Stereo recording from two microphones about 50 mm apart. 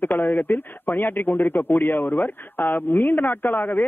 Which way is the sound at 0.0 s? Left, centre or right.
Left.